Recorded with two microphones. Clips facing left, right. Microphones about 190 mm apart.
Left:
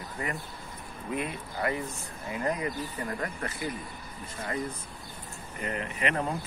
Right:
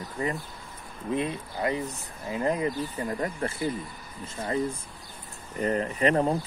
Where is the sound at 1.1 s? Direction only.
20° right (ahead or behind).